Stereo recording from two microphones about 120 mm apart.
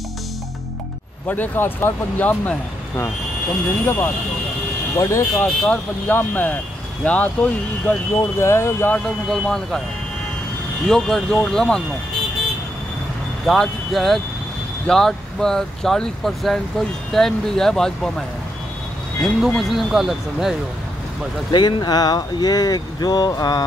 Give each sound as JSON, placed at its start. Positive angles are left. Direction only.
{"t": 1.2, "sound": "speech", "side_deg": 15}
{"t": 5.3, "sound": "speech", "side_deg": 10}
{"t": 9.3, "sound": "speech", "side_deg": 0}
{"t": 10.9, "sound": "speech", "side_deg": 5}
{"t": 13.5, "sound": "speech", "side_deg": 0}
{"t": 19.4, "sound": "speech", "side_deg": 0}
{"t": 21.5, "sound": "speech", "side_deg": 40}